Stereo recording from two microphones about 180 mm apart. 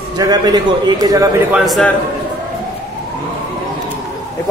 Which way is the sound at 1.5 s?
Centre (ahead or behind).